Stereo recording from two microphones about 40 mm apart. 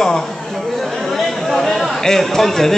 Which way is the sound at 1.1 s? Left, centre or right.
Centre.